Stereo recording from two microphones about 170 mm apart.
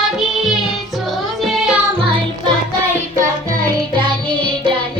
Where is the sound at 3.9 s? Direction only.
30° right (ahead or behind).